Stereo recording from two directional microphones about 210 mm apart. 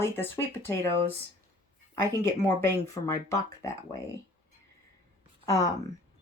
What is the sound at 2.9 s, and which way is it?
Speech, 15° left (ahead or behind).